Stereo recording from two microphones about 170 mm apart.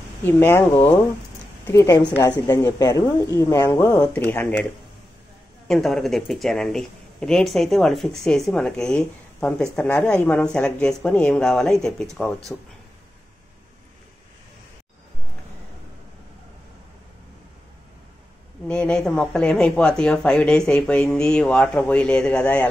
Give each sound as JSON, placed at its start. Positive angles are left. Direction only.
{"t": 0.2, "sound": "a woman's voice", "side_deg": 10}
{"t": 5.7, "sound": "speech", "side_deg": 0}
{"t": 18.7, "sound": "speech", "side_deg": 5}